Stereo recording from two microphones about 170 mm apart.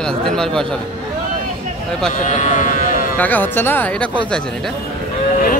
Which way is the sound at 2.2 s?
45° left (ahead or behind).